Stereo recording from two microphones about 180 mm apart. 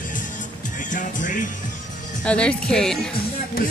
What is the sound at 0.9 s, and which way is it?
Speech, 45° left (ahead or behind).